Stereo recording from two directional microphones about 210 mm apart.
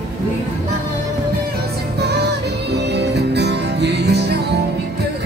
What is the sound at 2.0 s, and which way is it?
Music, 50° right (ahead or behind).